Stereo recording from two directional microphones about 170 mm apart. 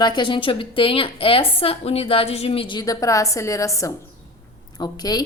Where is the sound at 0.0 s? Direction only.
25° left (ahead or behind).